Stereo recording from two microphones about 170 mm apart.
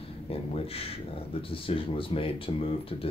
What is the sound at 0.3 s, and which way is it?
Speech, 35° left (ahead or behind).